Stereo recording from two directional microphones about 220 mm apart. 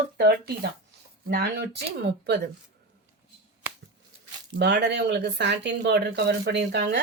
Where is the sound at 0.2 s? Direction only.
45° right (ahead or behind).